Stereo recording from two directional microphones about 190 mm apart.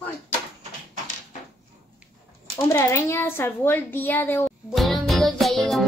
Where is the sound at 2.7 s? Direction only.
15° left (ahead or behind).